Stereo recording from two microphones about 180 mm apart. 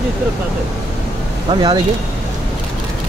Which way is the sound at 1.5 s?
30° right (ahead or behind).